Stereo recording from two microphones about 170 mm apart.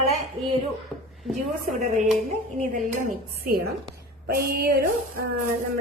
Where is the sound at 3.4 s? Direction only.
65° right (ahead or behind).